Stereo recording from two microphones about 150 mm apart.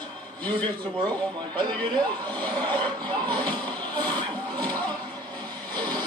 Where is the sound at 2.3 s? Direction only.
10° left (ahead or behind).